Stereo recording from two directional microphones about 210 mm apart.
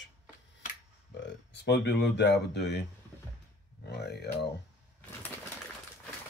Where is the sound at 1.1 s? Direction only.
55° left (ahead or behind).